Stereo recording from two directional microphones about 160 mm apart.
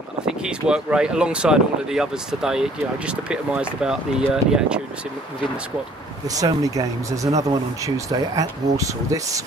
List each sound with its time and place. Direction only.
0.2 s speech: 5° right (ahead or behind)
6.2 s speech: 20° right (ahead or behind)